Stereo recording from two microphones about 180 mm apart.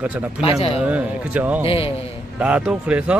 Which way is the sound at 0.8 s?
10° right (ahead or behind).